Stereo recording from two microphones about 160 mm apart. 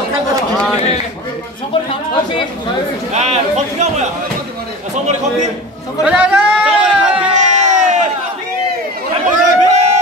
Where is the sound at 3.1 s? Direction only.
45° right (ahead or behind).